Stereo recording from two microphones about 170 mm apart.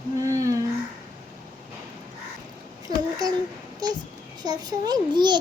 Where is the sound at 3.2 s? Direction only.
20° right (ahead or behind).